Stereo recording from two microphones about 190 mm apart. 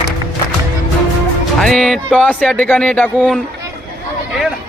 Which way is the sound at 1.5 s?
Centre (ahead or behind).